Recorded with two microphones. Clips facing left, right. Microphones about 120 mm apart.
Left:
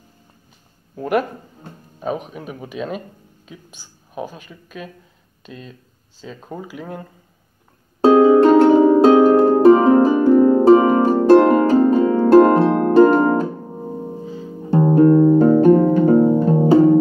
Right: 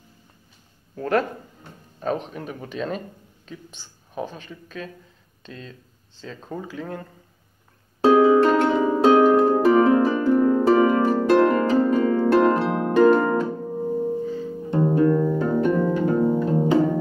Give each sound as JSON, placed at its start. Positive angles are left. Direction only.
{"t": 0.9, "sound": "speech", "side_deg": 15}
{"t": 8.0, "sound": "harp", "side_deg": 30}
{"t": 13.7, "sound": "music", "side_deg": 20}
{"t": 14.6, "sound": "music", "side_deg": 40}